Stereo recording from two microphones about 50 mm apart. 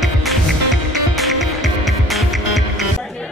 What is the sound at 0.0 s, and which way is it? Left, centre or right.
Music, centre.